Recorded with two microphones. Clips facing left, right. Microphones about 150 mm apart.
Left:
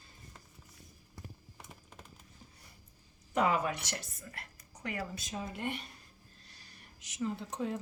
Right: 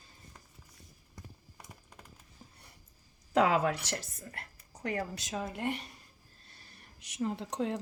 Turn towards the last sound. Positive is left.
turn(degrees=-70)  # may be behind; listen again after turning